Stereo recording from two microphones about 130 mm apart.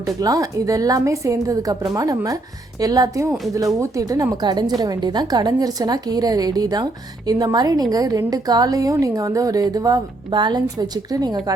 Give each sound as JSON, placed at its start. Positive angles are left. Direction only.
{"t": 0.0, "sound": "a woman's voice", "side_deg": -25}